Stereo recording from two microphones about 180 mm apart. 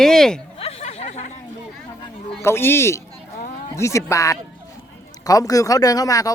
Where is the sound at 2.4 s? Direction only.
15° left (ahead or behind).